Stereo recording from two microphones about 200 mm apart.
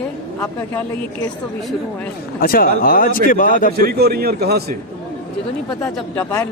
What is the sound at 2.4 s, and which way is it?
A man's voice, 45° left (ahead or behind).